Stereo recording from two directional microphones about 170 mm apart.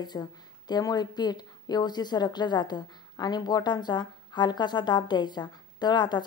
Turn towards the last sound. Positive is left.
turn(degrees=25)  # may be behind; listen again after turning